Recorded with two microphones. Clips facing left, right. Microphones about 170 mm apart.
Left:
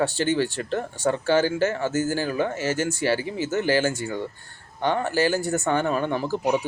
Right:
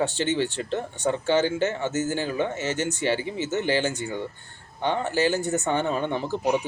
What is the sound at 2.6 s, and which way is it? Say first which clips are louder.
Speech: left 2 dB; 20° right (ahead or behind).